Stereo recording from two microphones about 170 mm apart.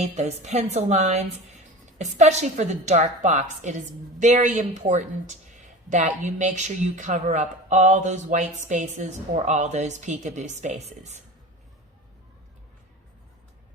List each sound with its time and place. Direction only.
0.0 s a woman's voice: 40° right (ahead or behind)